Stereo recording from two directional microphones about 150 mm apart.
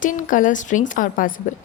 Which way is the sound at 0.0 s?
60° left (ahead or behind).